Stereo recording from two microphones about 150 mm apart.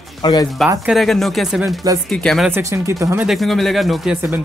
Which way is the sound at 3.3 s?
Centre (ahead or behind).